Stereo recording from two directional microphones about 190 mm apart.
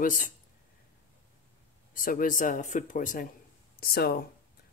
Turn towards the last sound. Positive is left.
turn(degrees=50)  # may be behind; listen again after turning